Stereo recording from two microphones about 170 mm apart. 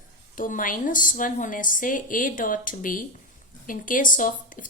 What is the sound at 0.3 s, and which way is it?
Speech, 50° left (ahead or behind).